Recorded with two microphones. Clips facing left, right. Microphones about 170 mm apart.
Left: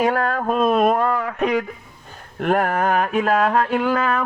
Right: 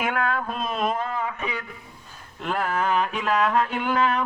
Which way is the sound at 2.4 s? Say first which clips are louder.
Left 7 dB; 60° left (ahead or behind).